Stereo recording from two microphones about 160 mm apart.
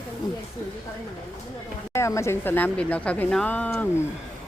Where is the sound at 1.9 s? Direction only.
20° left (ahead or behind).